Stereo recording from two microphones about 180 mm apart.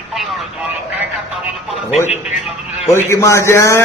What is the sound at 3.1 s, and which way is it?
Speech, 15° left (ahead or behind).